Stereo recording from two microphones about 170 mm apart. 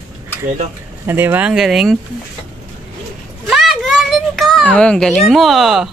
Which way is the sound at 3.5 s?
Centre (ahead or behind).